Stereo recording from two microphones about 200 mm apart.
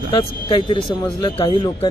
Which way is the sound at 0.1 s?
20° left (ahead or behind).